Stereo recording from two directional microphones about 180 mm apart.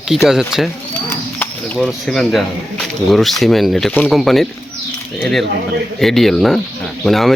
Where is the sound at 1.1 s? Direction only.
10° left (ahead or behind).